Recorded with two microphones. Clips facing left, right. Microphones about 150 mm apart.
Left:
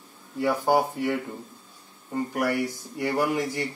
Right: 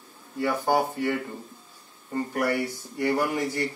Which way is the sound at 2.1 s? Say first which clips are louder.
Even; 10° left (ahead or behind).